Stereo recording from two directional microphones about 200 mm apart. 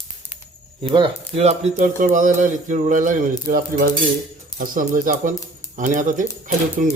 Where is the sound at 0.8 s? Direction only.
25° right (ahead or behind); by 6.9 s 40° right (ahead or behind).